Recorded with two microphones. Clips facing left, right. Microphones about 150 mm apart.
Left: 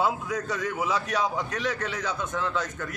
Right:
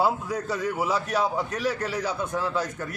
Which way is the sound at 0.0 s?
5° right (ahead or behind).